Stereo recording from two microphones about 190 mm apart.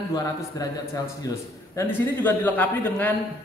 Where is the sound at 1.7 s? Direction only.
10° left (ahead or behind).